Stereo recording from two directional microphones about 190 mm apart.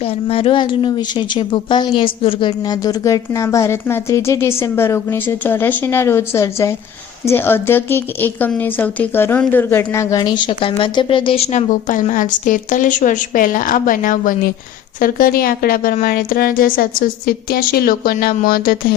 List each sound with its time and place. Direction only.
0.0 s a woman's voice: 30° left (ahead or behind); by 18.9 s 50° left (ahead or behind)